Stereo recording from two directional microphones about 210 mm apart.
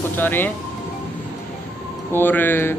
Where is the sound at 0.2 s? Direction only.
10° left (ahead or behind).